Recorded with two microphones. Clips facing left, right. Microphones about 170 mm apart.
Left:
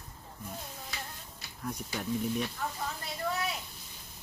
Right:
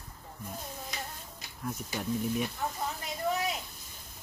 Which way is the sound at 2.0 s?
Centre (ahead or behind).